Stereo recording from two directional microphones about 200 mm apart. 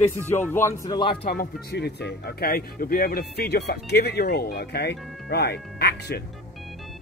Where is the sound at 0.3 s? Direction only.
10° left (ahead or behind).